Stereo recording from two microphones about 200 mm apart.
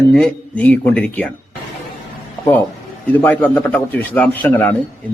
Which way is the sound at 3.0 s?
10° left (ahead or behind).